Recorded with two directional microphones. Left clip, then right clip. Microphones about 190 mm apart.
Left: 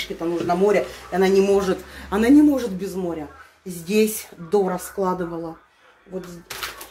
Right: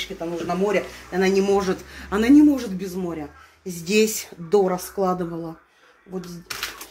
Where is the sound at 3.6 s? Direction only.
30° right (ahead or behind).